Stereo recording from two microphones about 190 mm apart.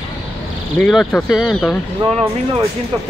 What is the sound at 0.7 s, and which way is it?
Speech, 5° left (ahead or behind).